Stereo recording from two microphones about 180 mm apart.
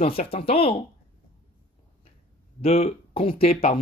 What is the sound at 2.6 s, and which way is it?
A man's voice, 35° left (ahead or behind).